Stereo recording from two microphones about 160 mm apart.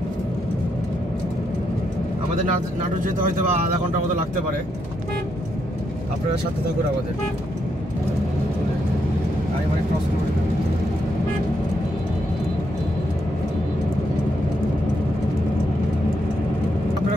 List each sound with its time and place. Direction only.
3.0 s speech: 55° right (ahead or behind)